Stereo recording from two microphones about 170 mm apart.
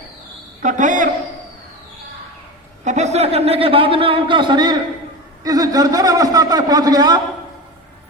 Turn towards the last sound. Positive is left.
turn(degrees=-20)  # may be behind; listen again after turning